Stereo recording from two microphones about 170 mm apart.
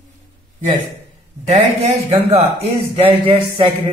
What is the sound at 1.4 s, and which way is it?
A man's voice, 35° right (ahead or behind).